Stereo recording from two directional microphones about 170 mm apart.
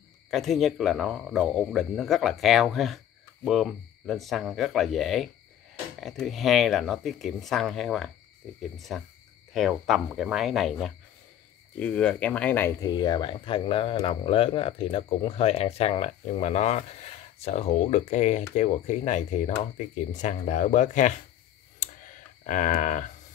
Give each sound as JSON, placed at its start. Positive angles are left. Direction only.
{"t": 0.3, "sound": "speech", "side_deg": 0}
{"t": 12.8, "sound": "speech", "side_deg": 25}
{"t": 21.7, "sound": "clicking", "side_deg": 50}